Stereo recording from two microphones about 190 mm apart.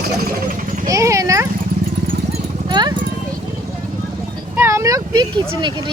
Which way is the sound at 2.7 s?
25° right (ahead or behind).